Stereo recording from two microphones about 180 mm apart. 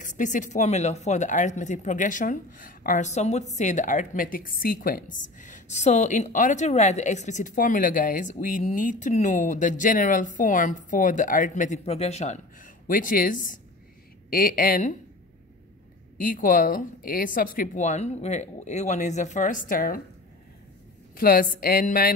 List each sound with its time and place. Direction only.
0.0 s speech: 45° left (ahead or behind)
16.2 s speech: 50° left (ahead or behind)
21.2 s speech: 55° left (ahead or behind)